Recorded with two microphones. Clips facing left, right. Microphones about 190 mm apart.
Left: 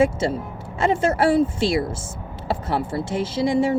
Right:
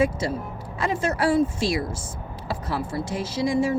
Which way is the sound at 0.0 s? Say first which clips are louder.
Left 4 dB; 25° left (ahead or behind).